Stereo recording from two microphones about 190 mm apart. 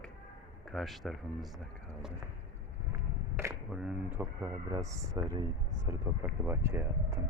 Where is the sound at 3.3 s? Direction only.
15° right (ahead or behind).